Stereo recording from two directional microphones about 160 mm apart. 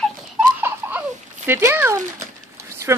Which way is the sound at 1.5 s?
15° right (ahead or behind).